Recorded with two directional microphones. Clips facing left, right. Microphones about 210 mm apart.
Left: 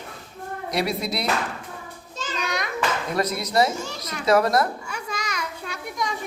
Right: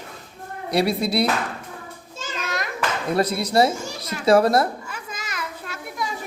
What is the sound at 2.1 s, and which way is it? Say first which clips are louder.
Children playing: left 1 dB; centre (ahead or behind).